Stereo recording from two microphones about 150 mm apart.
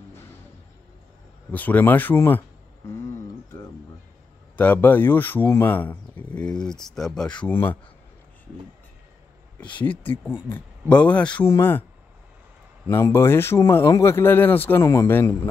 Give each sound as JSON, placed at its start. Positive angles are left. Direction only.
{"t": 1.5, "sound": "speech", "side_deg": 10}
{"t": 4.6, "sound": "speech", "side_deg": 10}
{"t": 9.8, "sound": "speech", "side_deg": 10}
{"t": 12.8, "sound": "speech", "side_deg": 15}